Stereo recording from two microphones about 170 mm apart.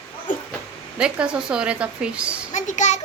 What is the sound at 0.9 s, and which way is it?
A woman's voice, 5° right (ahead or behind).